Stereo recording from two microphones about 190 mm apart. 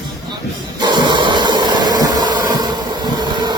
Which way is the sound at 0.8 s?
25° right (ahead or behind).